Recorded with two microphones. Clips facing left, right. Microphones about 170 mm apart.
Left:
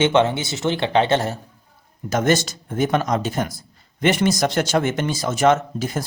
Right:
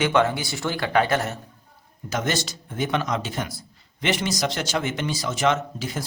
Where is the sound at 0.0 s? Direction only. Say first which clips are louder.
Left 4 dB; 25° left (ahead or behind).